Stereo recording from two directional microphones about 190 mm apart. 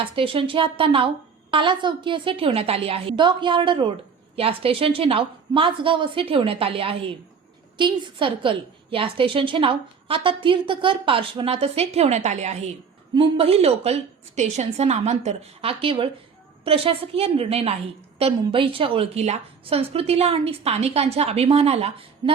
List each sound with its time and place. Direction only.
0.0 s a woman's voice: 30° right (ahead or behind)